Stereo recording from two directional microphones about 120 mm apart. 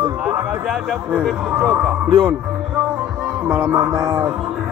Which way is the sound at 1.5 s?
20° right (ahead or behind).